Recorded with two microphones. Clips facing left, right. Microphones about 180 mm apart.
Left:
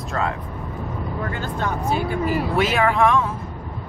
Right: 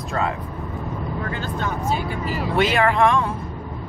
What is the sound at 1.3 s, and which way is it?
Speech, 50° left (ahead or behind).